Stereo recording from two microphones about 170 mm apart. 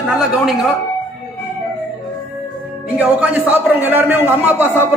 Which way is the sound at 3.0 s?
10° right (ahead or behind).